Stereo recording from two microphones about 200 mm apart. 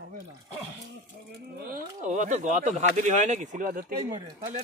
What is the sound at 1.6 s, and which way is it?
Speech, 45° right (ahead or behind).